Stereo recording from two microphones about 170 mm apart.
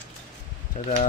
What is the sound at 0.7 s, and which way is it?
Speech, 50° left (ahead or behind).